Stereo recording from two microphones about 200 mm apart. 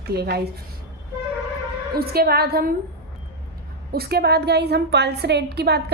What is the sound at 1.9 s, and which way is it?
Speech, 50° right (ahead or behind).